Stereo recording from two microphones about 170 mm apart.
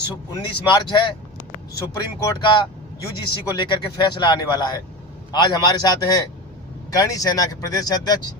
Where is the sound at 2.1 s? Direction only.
25° left (ahead or behind).